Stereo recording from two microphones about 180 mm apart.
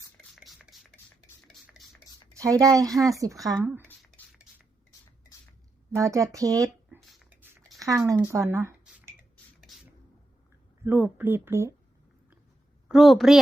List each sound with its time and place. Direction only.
0.3 s a sound: centre (ahead or behind)
2.3 s speech: 15° right (ahead or behind)
5.9 s speech: 15° right (ahead or behind)
8.0 s a sound: 15° right (ahead or behind)
10.8 s speech: 10° right (ahead or behind)
12.9 s a woman's voice: centre (ahead or behind)